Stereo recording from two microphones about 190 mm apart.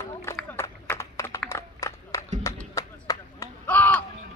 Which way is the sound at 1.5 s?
15° left (ahead or behind).